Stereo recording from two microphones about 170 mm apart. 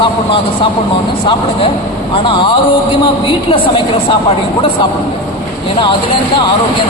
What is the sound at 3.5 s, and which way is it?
Speech, 30° left (ahead or behind).